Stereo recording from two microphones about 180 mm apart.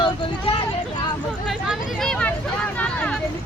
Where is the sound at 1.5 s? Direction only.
Centre (ahead or behind).